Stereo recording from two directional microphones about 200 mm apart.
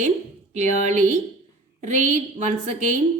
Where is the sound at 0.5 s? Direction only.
35° right (ahead or behind).